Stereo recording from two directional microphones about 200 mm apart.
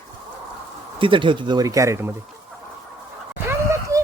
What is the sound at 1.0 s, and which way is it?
Speech, 25° right (ahead or behind).